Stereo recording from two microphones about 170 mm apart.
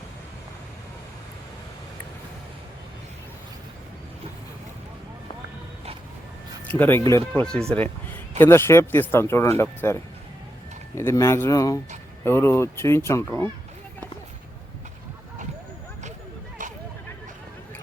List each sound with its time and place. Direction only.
6.7 s speech: 10° left (ahead or behind)
7.3 s speech: 5° left (ahead or behind)